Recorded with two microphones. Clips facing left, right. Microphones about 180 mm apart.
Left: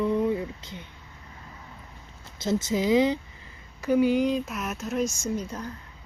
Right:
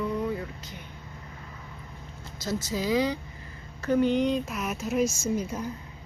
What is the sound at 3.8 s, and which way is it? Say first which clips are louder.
Speech: left 2 dB; 10° left (ahead or behind).